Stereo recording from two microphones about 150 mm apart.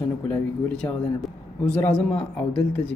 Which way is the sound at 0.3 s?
10° left (ahead or behind).